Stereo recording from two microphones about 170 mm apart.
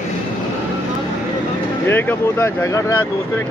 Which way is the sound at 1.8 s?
15° left (ahead or behind).